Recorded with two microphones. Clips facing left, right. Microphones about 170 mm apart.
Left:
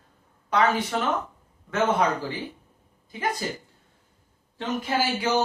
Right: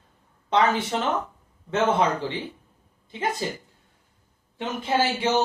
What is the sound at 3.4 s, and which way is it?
Speech, 25° right (ahead or behind).